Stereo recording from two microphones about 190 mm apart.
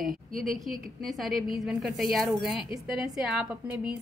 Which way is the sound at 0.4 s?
Centre (ahead or behind).